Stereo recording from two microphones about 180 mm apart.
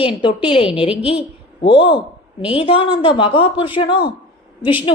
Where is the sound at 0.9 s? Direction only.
5° right (ahead or behind).